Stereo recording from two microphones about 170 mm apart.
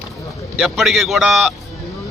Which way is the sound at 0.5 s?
Centre (ahead or behind).